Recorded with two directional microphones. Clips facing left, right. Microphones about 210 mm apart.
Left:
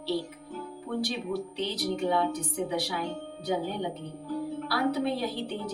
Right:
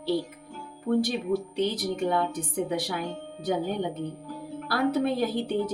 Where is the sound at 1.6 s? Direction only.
50° right (ahead or behind).